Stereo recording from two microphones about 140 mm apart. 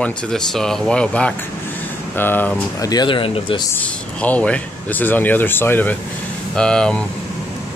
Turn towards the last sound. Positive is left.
turn(degrees=5)  # may be behind; listen again after turning